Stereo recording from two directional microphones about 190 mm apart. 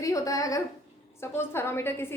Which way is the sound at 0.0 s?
15° left (ahead or behind).